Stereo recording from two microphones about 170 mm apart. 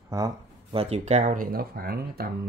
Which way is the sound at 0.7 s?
35° right (ahead or behind).